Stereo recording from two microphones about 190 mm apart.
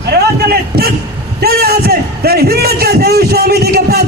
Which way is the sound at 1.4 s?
55° right (ahead or behind).